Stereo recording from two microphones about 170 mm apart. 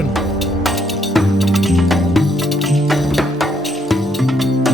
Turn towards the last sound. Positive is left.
turn(degrees=0)  # may be behind; listen again after turning